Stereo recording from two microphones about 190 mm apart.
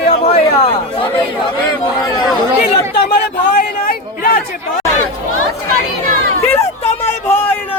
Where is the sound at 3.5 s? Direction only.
50° left (ahead or behind).